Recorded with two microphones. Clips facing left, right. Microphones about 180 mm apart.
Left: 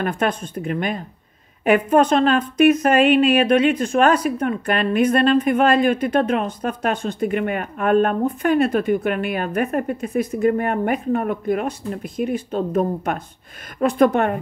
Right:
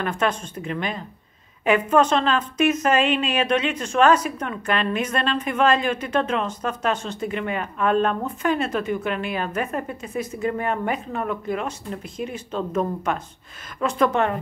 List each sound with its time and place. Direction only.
0.0 s a woman's voice: 50° left (ahead or behind)